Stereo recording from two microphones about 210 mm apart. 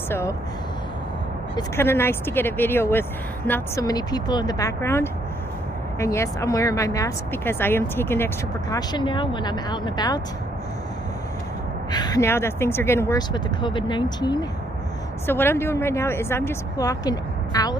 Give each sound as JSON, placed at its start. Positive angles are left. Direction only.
{"t": 0.1, "sound": "a woman's voice", "side_deg": 15}
{"t": 1.8, "sound": "a woman's voice", "side_deg": 10}
{"t": 11.9, "sound": "a woman's voice", "side_deg": 20}